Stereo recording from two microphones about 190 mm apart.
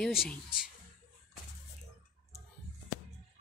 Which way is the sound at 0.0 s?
Centre (ahead or behind).